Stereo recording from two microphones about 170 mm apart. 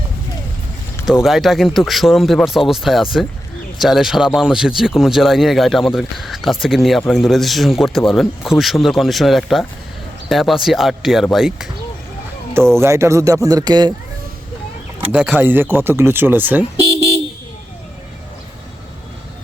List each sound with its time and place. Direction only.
1.0 s speech: centre (ahead or behind)
12.5 s speech: 15° right (ahead or behind)
15.4 s speech: 10° right (ahead or behind)